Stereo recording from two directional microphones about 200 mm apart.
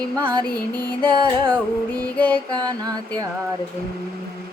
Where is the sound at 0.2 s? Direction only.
25° right (ahead or behind).